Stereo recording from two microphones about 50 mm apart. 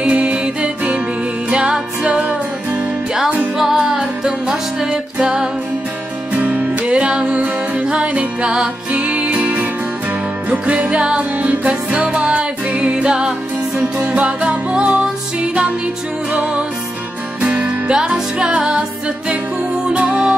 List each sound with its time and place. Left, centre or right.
0.0 s music: right
3.5 s music: centre
6.3 s music: right
13.9 s music: right
17.4 s music: right